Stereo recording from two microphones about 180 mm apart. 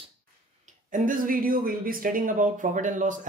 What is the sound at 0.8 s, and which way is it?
Speech, 45° right (ahead or behind).